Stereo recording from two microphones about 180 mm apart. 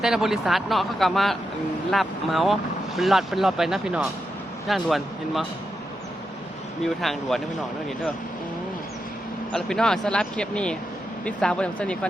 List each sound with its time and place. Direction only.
0.0 s speech: 5° right (ahead or behind)
6.8 s speech: centre (ahead or behind)
9.5 s speech: 5° left (ahead or behind)